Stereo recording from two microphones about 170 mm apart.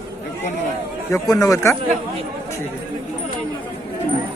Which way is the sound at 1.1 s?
20° left (ahead or behind).